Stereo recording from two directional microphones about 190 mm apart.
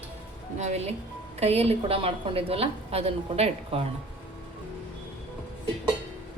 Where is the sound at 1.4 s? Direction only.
30° right (ahead or behind).